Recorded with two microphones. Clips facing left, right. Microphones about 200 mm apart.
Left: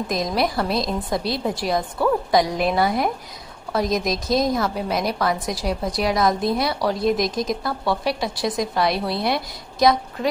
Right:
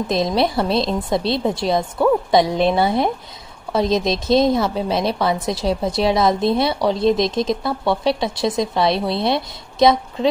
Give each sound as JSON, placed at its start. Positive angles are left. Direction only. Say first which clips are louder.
{"t": 0.1, "sound": "a woman's voice", "louder": "right 4 dB", "side_deg": -25}